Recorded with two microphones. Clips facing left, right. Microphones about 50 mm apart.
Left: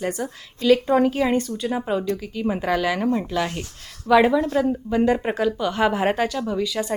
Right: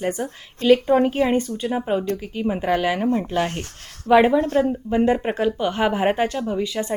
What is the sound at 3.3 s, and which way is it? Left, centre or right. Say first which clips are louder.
Speech: right 2 dB; right.